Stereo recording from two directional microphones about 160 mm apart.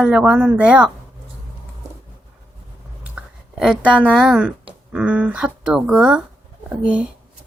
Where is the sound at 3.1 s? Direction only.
5° right (ahead or behind).